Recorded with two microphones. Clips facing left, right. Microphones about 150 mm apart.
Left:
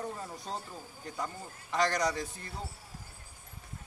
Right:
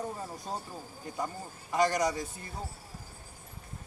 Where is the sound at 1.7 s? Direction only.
20° right (ahead or behind).